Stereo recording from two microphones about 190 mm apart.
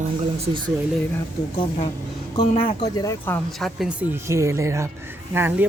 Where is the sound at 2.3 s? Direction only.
30° left (ahead or behind).